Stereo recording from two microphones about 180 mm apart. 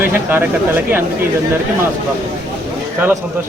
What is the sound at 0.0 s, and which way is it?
Speech, 10° right (ahead or behind).